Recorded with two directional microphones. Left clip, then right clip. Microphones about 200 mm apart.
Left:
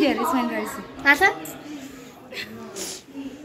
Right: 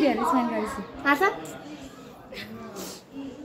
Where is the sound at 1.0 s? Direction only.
20° right (ahead or behind).